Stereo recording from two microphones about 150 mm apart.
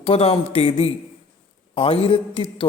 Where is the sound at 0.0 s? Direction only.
40° left (ahead or behind).